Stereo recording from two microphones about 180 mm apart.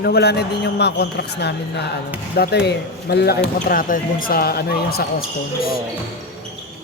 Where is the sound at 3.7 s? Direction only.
50° left (ahead or behind).